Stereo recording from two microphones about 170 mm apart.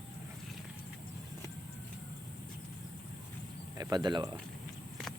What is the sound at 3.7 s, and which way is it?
Speech, 25° right (ahead or behind).